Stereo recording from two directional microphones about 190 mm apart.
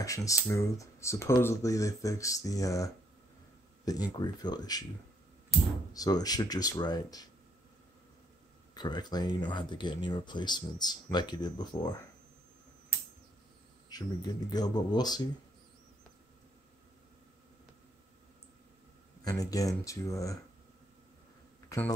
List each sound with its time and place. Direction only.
0.0 s speech: 15° left (ahead or behind)
5.9 s speech: 20° left (ahead or behind)
8.7 s speech: 20° left (ahead or behind)
13.8 s speech: 20° left (ahead or behind)
19.2 s speech: 20° left (ahead or behind)
21.6 s a sound: 10° left (ahead or behind)